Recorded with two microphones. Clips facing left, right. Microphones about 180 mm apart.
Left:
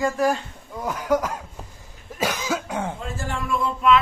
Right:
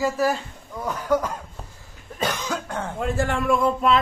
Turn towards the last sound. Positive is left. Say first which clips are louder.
# left 2 dB
turn(degrees=-35)  # may be behind; listen again after turning